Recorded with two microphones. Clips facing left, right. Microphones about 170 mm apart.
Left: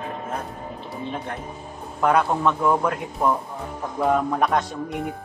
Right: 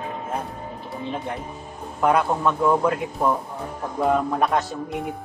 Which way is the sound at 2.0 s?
5° right (ahead or behind).